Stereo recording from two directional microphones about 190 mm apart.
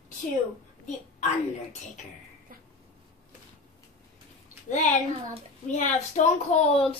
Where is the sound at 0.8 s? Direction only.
35° left (ahead or behind).